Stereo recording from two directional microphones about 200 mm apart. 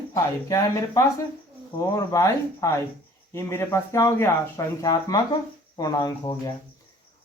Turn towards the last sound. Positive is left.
turn(degrees=20)  # may be behind; listen again after turning